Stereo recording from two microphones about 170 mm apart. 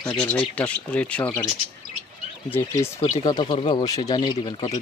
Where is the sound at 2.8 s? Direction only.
35° left (ahead or behind).